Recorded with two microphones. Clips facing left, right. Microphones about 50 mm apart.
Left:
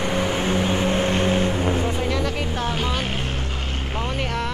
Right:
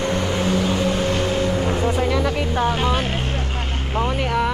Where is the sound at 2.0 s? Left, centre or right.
Centre.